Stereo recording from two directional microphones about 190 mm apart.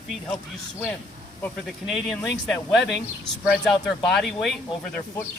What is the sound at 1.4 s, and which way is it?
Speech, centre (ahead or behind).